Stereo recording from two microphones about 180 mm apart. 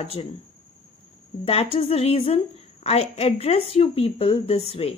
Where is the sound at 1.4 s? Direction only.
35° left (ahead or behind).